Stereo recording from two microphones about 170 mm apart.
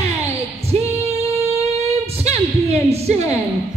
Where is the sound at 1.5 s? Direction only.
35° right (ahead or behind).